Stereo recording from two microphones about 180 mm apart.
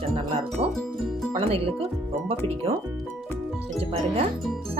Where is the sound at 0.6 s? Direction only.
30° right (ahead or behind).